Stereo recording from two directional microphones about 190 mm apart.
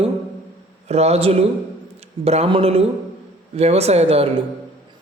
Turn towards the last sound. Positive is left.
turn(degrees=-30)  # may be behind; listen again after turning